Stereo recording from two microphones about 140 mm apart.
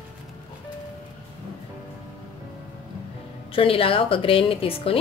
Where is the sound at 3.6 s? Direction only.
40° left (ahead or behind).